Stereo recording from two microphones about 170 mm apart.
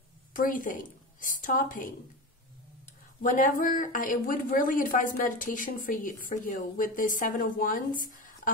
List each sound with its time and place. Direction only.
0.3 s a woman's voice: 55° left (ahead or behind)
3.2 s speech: 50° left (ahead or behind)